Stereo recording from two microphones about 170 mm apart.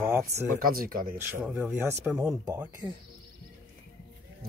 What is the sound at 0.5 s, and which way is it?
Speech, 55° right (ahead or behind).